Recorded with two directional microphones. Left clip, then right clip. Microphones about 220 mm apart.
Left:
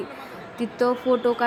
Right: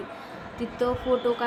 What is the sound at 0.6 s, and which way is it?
Speech, 15° left (ahead or behind).